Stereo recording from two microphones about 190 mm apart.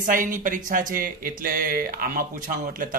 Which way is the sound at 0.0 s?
45° right (ahead or behind).